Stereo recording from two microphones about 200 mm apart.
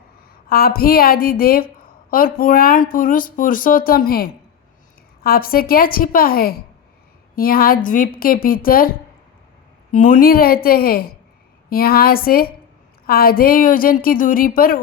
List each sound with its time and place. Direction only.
0.4 s a woman's voice: 50° left (ahead or behind)